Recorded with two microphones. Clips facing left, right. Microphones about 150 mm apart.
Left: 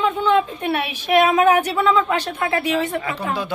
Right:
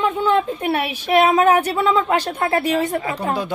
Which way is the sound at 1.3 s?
30° right (ahead or behind).